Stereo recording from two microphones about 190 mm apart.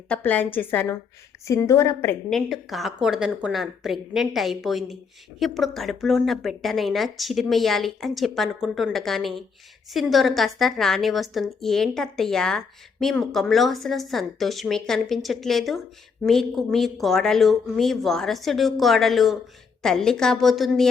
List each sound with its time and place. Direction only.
0.1 s a woman's voice: 10° left (ahead or behind)
2.3 s a woman's voice: centre (ahead or behind)